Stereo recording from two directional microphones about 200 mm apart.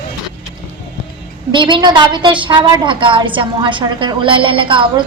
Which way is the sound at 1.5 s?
25° right (ahead or behind).